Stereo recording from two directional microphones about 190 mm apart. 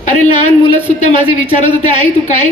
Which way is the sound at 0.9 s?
35° left (ahead or behind).